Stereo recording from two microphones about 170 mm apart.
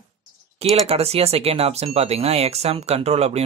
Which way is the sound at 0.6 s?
35° right (ahead or behind).